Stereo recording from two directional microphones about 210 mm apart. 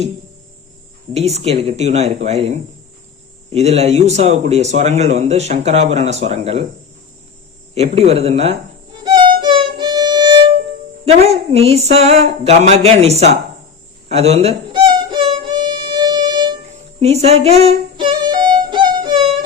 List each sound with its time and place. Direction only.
1.1 s speech: 30° right (ahead or behind)
3.5 s speech: 30° right (ahead or behind)
7.8 s speech: 30° right (ahead or behind)
9.4 s music: 20° right (ahead or behind)
11.0 s speech: 30° right (ahead or behind)
14.1 s music: 30° right (ahead or behind)